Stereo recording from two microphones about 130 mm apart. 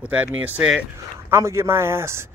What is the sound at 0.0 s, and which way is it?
Speech, 10° right (ahead or behind).